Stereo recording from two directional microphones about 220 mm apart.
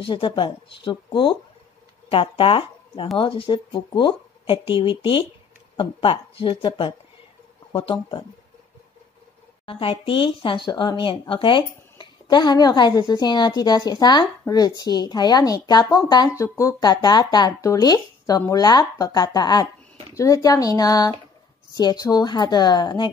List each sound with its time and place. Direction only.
0.0 s speech: 25° left (ahead or behind)
9.7 s speech: 25° left (ahead or behind)